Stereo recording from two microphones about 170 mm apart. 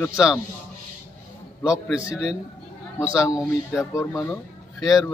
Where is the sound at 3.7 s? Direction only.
15° left (ahead or behind).